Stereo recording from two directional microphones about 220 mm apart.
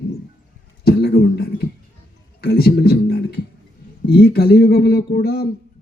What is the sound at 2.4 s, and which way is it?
Speech, 45° left (ahead or behind).